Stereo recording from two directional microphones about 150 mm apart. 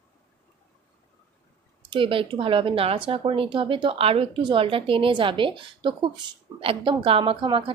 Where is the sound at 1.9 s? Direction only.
35° right (ahead or behind).